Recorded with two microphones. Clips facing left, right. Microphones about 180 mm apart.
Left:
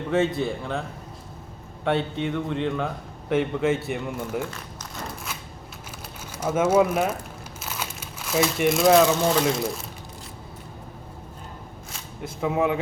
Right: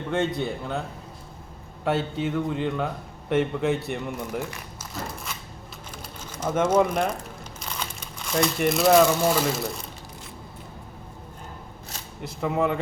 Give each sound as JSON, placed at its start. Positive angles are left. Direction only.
{"t": 0.1, "sound": "a man's voice", "side_deg": 0}
{"t": 6.3, "sound": "speech", "side_deg": 10}
{"t": 12.4, "sound": "a man's voice", "side_deg": 5}